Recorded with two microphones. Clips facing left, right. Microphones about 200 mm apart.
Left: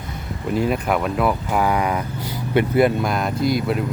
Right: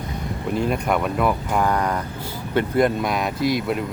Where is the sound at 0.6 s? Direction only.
Centre (ahead or behind).